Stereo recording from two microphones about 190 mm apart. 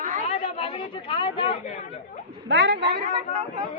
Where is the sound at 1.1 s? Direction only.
25° left (ahead or behind).